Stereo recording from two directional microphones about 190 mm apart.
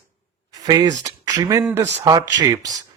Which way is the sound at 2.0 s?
20° right (ahead or behind).